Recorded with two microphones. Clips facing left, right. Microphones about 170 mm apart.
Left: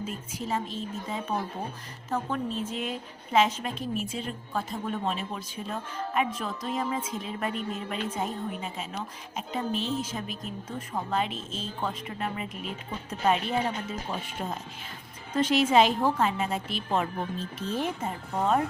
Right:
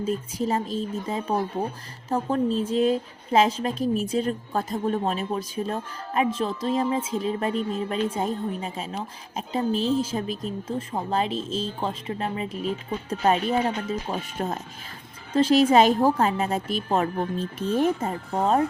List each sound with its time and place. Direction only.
0.0 s a woman's voice: 40° right (ahead or behind)